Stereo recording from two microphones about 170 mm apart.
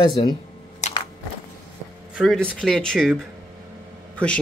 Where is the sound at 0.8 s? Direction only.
45° left (ahead or behind).